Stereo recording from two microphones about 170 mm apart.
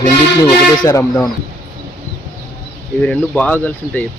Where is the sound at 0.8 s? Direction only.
15° left (ahead or behind).